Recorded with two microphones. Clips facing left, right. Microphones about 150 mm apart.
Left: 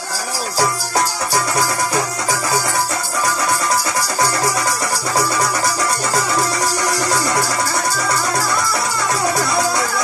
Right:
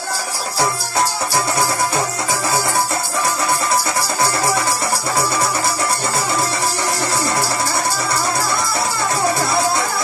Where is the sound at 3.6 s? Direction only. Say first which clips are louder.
Even; 25° right (ahead or behind).